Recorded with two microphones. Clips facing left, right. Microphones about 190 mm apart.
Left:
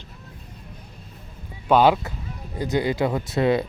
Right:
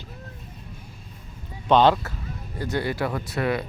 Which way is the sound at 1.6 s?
10° left (ahead or behind).